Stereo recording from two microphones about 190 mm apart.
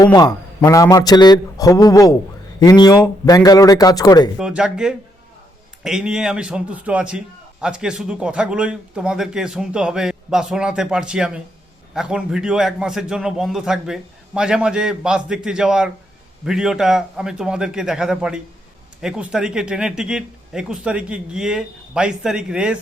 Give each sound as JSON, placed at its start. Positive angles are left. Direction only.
{"t": 0.0, "sound": "a man's voice", "side_deg": 20}
{"t": 4.4, "sound": "a man's voice", "side_deg": -5}